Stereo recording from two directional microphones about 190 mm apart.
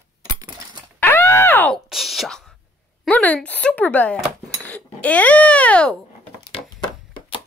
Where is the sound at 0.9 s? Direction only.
10° left (ahead or behind).